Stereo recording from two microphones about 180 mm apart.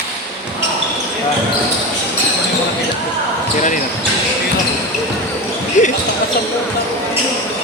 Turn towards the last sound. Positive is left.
turn(degrees=45)  # may be behind; listen again after turning